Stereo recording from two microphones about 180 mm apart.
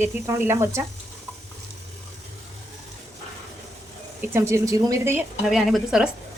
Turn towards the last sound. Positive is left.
turn(degrees=0)  # may be behind; listen again after turning